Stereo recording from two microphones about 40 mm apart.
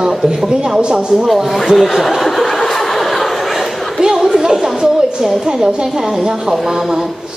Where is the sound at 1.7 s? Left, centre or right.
Centre.